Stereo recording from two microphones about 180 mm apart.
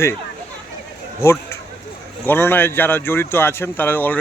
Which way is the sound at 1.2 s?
15° left (ahead or behind).